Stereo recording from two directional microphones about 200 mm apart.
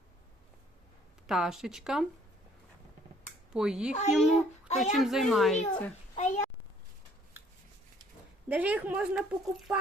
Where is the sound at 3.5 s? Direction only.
5° right (ahead or behind).